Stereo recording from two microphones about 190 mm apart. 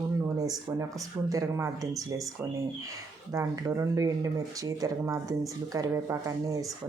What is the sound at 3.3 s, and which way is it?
Speech, 15° right (ahead or behind).